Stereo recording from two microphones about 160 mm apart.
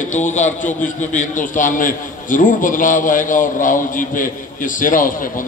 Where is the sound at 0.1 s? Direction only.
50° left (ahead or behind).